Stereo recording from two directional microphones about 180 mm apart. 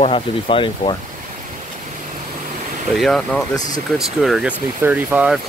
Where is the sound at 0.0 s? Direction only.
30° left (ahead or behind).